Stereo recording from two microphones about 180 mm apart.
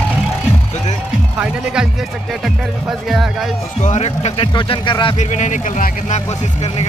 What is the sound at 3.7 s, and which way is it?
Speech, 40° left (ahead or behind).